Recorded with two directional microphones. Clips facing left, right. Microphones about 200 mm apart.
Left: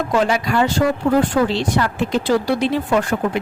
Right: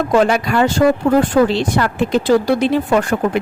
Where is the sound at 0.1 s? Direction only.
55° right (ahead or behind).